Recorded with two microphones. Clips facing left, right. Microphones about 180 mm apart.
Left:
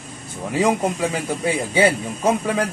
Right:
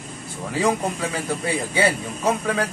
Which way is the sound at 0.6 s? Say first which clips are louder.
Left 3 dB; 20° left (ahead or behind).